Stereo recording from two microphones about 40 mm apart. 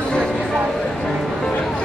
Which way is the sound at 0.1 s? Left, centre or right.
Centre.